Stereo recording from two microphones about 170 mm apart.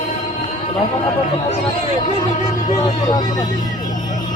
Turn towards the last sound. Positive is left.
turn(degrees=25)  # may be behind; listen again after turning